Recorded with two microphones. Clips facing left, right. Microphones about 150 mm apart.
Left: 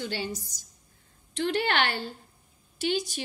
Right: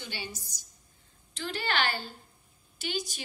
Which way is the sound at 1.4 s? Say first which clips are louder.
Left 5 dB; 40° right (ahead or behind).